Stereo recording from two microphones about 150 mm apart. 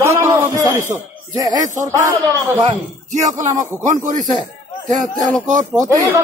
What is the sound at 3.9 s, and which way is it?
Speech, 60° right (ahead or behind).